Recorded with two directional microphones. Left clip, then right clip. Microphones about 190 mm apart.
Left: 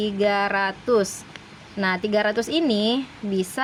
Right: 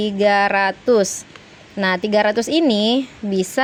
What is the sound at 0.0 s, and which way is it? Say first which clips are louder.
A woman's voice: right 6 dB; 25° right (ahead or behind).